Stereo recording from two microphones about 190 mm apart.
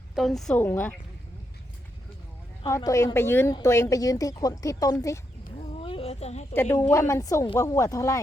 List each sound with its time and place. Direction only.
0.2 s speech: centre (ahead or behind)
2.6 s speech: 15° left (ahead or behind)
5.7 s a sound: 30° left (ahead or behind)
6.5 s speech: 10° left (ahead or behind)